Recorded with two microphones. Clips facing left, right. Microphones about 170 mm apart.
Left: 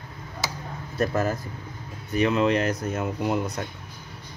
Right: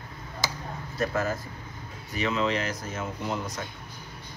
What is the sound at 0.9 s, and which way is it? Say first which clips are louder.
Speech: left 3 dB; 50° left (ahead or behind).